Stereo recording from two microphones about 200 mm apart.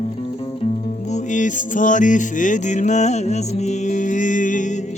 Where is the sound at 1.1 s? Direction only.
40° left (ahead or behind).